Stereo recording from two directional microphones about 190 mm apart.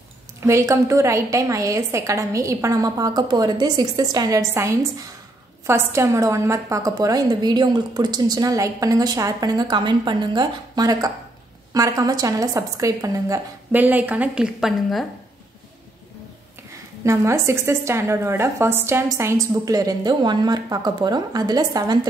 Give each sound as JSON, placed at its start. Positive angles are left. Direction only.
{"t": 0.4, "sound": "a woman's voice", "side_deg": -15}
{"t": 17.0, "sound": "a woman's voice", "side_deg": -15}